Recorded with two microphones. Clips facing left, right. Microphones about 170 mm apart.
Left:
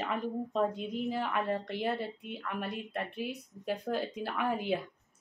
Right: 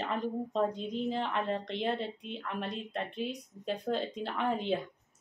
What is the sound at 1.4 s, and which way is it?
Speech, 25° right (ahead or behind).